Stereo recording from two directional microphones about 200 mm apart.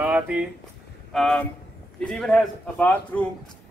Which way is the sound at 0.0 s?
5° right (ahead or behind).